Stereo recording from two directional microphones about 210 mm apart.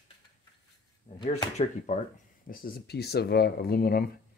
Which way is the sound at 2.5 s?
45° left (ahead or behind).